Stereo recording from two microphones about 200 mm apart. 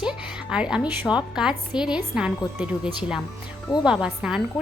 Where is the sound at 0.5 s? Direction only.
5° right (ahead or behind).